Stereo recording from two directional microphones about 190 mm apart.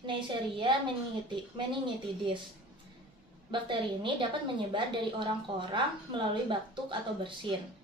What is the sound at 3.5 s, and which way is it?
A woman's voice, 25° right (ahead or behind).